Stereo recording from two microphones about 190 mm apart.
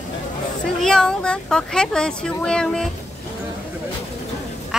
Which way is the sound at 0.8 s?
5° left (ahead or behind).